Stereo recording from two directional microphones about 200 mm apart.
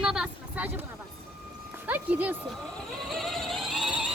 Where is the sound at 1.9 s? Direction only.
10° right (ahead or behind).